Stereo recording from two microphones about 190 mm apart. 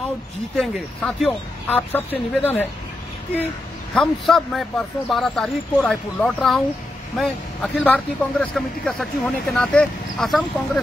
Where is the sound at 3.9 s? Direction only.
Centre (ahead or behind).